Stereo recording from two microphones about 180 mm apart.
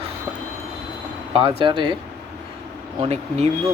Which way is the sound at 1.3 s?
30° right (ahead or behind).